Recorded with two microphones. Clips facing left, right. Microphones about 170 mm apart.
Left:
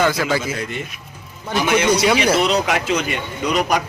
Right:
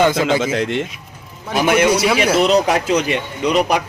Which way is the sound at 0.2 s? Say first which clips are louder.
Right 4 dB; 20° right (ahead or behind).